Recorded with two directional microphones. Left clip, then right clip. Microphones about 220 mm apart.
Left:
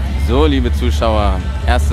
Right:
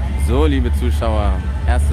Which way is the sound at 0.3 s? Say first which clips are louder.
Left 4 dB; 5° left (ahead or behind).